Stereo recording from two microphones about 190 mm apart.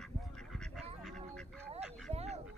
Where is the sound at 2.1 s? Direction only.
35° right (ahead or behind).